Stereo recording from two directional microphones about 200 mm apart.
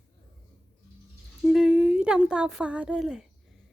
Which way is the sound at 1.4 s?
Centre (ahead or behind).